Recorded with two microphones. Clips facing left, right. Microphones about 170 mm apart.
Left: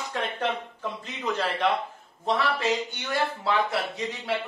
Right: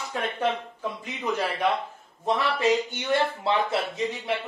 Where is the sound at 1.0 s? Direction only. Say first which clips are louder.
Right 1 dB; 10° right (ahead or behind).